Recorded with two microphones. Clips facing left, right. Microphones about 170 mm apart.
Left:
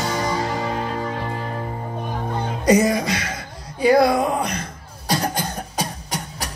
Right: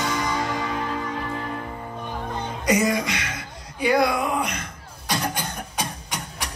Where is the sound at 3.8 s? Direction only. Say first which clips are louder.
Left 5 dB; 35° left (ahead or behind).